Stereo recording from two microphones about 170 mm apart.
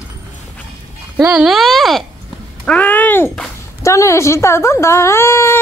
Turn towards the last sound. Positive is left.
turn(degrees=15)  # may be behind; listen again after turning